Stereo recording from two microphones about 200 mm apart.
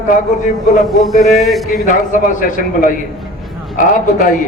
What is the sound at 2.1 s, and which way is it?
A man's voice, 40° left (ahead or behind).